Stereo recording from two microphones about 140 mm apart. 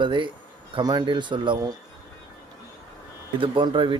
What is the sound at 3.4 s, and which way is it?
Speech, 35° right (ahead or behind).